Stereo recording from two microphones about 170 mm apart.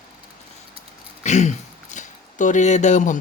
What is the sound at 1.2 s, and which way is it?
Speech, 45° left (ahead or behind).